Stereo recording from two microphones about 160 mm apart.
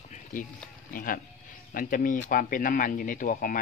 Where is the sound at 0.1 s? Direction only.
55° left (ahead or behind).